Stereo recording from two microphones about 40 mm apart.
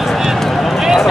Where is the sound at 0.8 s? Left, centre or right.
Centre.